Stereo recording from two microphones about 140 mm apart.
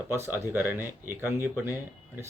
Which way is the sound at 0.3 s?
15° right (ahead or behind).